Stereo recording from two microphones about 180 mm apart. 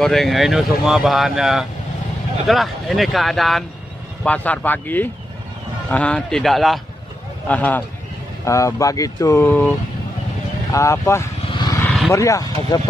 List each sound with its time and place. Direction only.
0.0 s speech: centre (ahead or behind)
10.7 s vehicle: 15° left (ahead or behind)
12.1 s speech: 15° left (ahead or behind)